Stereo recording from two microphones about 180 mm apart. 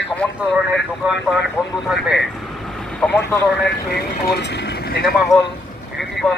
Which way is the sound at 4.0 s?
70° left (ahead or behind).